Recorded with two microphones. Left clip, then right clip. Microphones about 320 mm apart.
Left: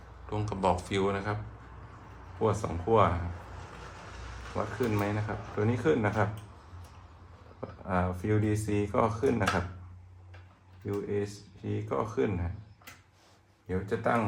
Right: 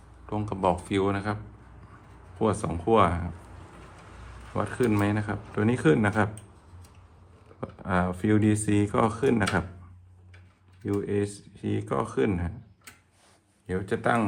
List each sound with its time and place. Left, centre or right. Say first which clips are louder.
0.3 s speech: right 3 dB; right
2.4 s speech: right 3 dB; right
4.5 s speech: right 5 dB; right
7.6 s speech: right 4 dB; right
10.8 s speech: right 5 dB; right
13.7 s speech: right 3 dB; right